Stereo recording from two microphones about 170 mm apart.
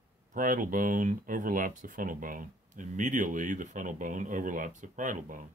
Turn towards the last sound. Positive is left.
turn(degrees=-50)  # may be behind; listen again after turning